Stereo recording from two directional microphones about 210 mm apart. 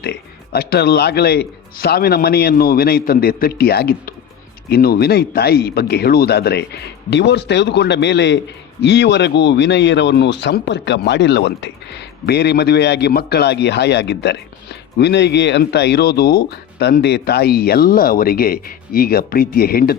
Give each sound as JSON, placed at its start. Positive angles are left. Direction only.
{"t": 0.0, "sound": "speech", "side_deg": 50}